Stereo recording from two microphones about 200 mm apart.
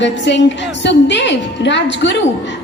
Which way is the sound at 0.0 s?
60° left (ahead or behind).